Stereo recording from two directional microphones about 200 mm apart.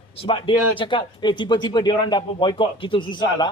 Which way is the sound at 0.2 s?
25° left (ahead or behind).